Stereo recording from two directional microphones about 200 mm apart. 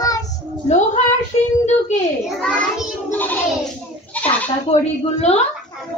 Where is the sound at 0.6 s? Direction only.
35° left (ahead or behind).